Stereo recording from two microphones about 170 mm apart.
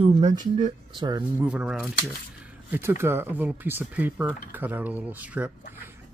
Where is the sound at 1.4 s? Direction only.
5° right (ahead or behind).